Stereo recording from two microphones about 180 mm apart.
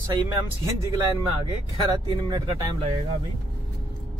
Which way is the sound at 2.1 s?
20° right (ahead or behind).